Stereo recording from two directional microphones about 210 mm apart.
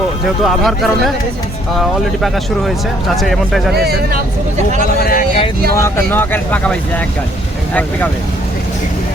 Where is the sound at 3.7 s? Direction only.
50° right (ahead or behind).